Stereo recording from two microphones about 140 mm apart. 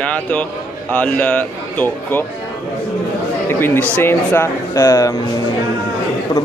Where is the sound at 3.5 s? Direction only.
15° left (ahead or behind).